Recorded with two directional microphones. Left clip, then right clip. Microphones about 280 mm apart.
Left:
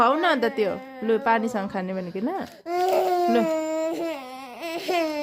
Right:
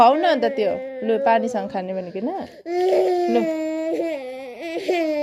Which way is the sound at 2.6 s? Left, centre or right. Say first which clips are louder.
Right 3 dB; left.